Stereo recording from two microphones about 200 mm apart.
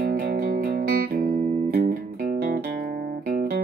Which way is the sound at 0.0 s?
50° right (ahead or behind).